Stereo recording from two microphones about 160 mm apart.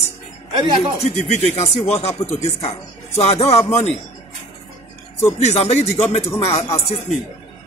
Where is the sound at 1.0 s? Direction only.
40° left (ahead or behind).